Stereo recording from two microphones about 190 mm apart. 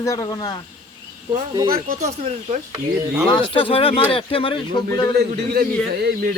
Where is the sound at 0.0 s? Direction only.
20° left (ahead or behind).